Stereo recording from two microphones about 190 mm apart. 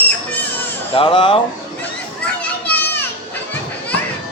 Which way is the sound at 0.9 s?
25° left (ahead or behind).